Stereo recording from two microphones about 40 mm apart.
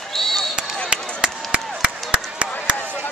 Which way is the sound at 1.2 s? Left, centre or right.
Right.